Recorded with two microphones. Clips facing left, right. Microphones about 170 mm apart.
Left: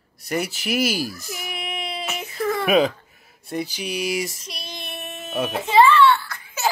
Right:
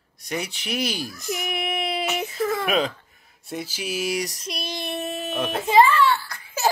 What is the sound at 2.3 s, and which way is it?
Baby cry, centre (ahead or behind).